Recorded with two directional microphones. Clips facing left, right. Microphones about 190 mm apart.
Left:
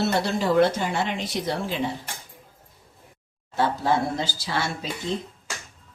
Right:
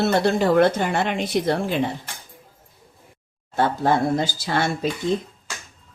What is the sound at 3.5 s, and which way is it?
Speech, 50° right (ahead or behind).